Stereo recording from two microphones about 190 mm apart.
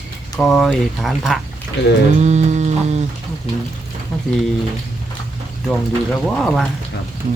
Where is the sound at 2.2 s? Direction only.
35° right (ahead or behind).